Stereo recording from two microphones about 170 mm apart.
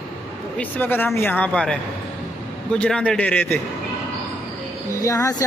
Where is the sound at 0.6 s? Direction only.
10° left (ahead or behind).